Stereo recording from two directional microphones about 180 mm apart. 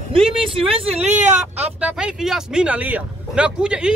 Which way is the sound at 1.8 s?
5° right (ahead or behind).